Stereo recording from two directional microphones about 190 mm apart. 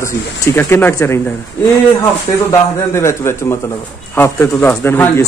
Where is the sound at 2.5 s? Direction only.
15° left (ahead or behind).